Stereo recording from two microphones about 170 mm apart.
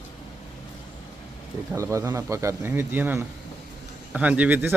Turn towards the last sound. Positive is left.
turn(degrees=-10)  # may be behind; listen again after turning